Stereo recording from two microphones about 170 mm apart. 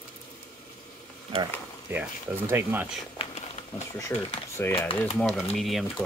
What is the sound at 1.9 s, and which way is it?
Speech, 15° right (ahead or behind).